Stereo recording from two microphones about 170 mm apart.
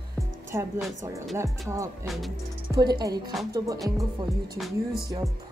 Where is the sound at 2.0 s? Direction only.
Centre (ahead or behind).